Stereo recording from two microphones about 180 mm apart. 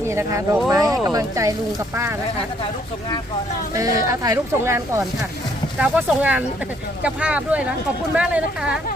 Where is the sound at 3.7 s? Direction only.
20° right (ahead or behind).